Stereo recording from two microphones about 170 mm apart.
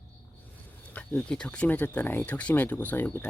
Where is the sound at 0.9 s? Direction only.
5° left (ahead or behind).